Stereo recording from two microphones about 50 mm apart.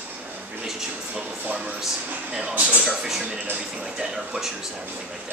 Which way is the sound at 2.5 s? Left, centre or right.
Right.